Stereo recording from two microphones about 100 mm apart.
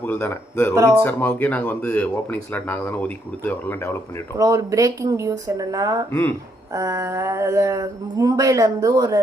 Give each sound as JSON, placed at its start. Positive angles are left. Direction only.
{"t": 0.0, "sound": "speech", "side_deg": 20}
{"t": 0.7, "sound": "speech", "side_deg": -30}
{"t": 0.9, "sound": "speech", "side_deg": 20}
{"t": 4.4, "sound": "a sound", "side_deg": -35}